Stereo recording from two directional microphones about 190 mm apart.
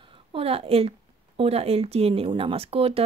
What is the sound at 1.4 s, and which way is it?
A woman's voice, 30° right (ahead or behind).